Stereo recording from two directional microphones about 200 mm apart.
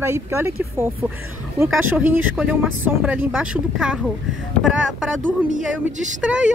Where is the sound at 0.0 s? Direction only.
15° right (ahead or behind).